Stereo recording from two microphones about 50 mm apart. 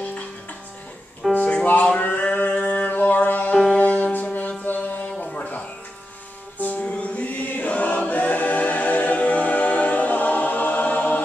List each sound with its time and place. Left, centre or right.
1.3 s music: left
2.0 s a sound: left
3.7 s music: left
5.2 s music: left
6.6 s music: left